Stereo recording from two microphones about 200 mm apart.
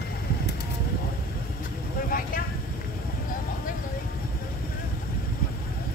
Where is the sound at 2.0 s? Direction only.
45° left (ahead or behind).